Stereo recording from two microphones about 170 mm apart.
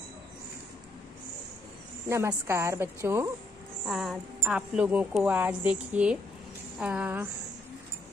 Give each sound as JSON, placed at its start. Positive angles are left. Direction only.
{"t": 2.0, "sound": "a woman's voice", "side_deg": -15}
{"t": 3.8, "sound": "a woman's voice", "side_deg": 0}